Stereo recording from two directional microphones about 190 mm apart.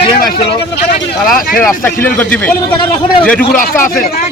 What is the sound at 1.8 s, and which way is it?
Speech, 10° left (ahead or behind).